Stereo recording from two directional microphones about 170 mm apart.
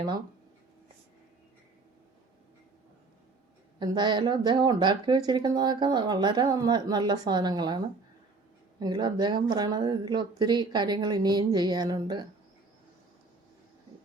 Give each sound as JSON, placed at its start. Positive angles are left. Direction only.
{"t": 3.8, "sound": "speech", "side_deg": -25}
{"t": 8.8, "sound": "speech", "side_deg": -25}